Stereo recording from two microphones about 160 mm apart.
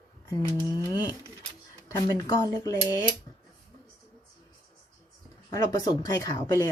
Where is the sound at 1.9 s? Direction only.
20° left (ahead or behind).